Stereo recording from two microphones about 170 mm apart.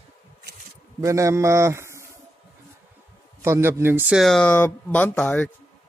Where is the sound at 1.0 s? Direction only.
20° right (ahead or behind).